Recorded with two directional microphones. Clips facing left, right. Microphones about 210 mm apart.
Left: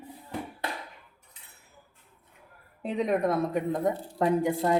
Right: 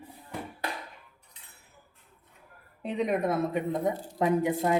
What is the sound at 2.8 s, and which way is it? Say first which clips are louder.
Speech: left 1 dB; centre (ahead or behind).